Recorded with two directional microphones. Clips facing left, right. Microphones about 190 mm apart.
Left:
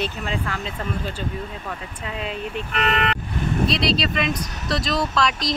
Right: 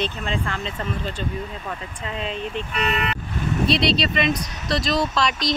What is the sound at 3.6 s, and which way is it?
Speech, centre (ahead or behind).